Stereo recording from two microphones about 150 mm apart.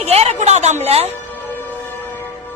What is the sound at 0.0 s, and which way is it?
Music, 45° right (ahead or behind).